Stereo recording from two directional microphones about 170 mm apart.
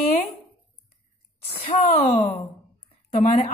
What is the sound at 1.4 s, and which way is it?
A woman's voice, 35° left (ahead or behind).